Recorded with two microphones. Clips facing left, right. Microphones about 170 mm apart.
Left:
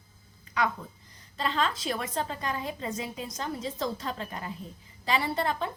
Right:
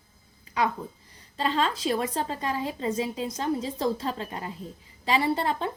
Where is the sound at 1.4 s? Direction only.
30° right (ahead or behind).